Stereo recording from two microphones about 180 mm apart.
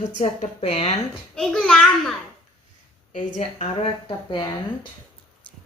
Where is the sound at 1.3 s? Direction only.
5° left (ahead or behind).